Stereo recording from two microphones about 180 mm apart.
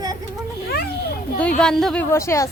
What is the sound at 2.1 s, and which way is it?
Speech, 15° left (ahead or behind).